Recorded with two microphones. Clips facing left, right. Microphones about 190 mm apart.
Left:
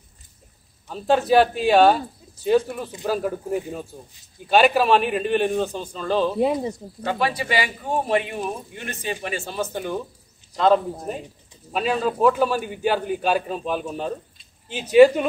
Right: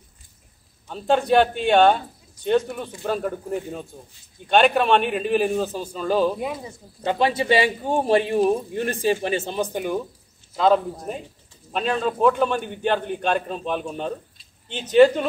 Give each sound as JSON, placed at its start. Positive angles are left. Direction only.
{"t": 0.8, "sound": "a man's voice", "side_deg": 0}
{"t": 6.4, "sound": "speech", "side_deg": 30}
{"t": 7.0, "sound": "speech", "side_deg": -25}
{"t": 10.5, "sound": "a man's voice", "side_deg": 0}